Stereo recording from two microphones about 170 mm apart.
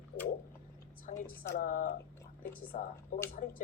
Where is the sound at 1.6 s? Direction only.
50° left (ahead or behind).